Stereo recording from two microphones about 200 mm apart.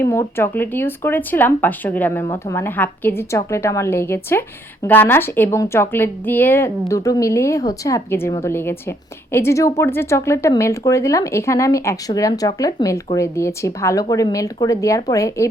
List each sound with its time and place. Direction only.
0.0 s speech: 15° left (ahead or behind)